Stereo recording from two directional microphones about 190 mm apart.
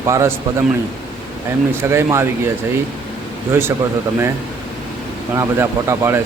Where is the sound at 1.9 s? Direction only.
15° right (ahead or behind).